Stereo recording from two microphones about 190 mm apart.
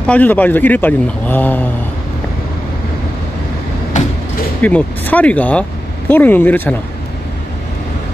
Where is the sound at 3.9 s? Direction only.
40° left (ahead or behind).